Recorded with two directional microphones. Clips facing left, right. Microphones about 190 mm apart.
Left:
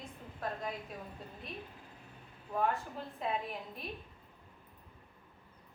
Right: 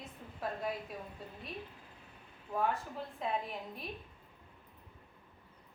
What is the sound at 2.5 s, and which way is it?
A woman's voice, centre (ahead or behind).